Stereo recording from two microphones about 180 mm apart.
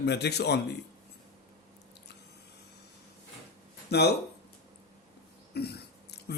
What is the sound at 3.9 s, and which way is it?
Speech, 65° left (ahead or behind).